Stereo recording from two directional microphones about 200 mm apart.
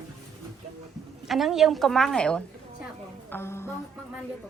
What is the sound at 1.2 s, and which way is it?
A woman's voice, centre (ahead or behind).